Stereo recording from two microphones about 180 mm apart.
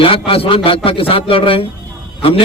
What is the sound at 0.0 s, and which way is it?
A man's voice, 30° left (ahead or behind).